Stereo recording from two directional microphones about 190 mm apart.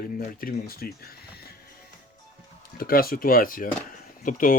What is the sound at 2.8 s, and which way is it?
Speech, 50° left (ahead or behind).